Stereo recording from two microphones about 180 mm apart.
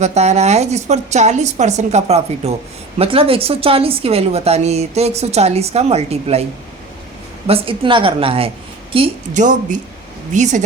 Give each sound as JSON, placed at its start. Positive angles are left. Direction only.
{"t": 0.0, "sound": "speech", "side_deg": -40}
{"t": 7.4, "sound": "speech", "side_deg": -30}
{"t": 9.3, "sound": "a woman's voice", "side_deg": -45}